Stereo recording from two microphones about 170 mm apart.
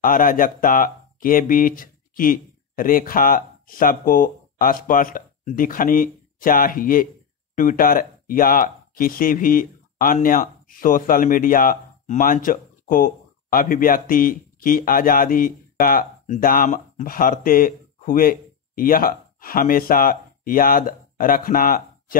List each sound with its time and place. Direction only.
0.0 s speech: 55° left (ahead or behind)